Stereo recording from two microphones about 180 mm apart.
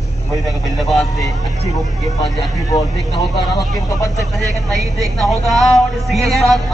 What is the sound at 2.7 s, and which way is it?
Speech, 25° left (ahead or behind).